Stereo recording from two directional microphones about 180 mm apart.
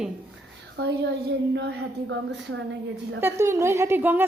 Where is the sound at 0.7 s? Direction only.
75° right (ahead or behind).